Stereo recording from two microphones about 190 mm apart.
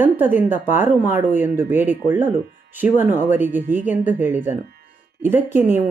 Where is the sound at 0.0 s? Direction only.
10° right (ahead or behind).